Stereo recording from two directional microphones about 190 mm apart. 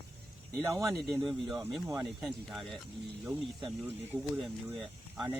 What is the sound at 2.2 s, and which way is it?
Speech, centre (ahead or behind).